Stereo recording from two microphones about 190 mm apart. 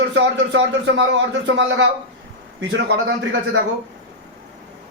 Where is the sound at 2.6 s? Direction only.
70° right (ahead or behind).